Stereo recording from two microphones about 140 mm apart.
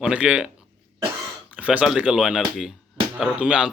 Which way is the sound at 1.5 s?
10° right (ahead or behind).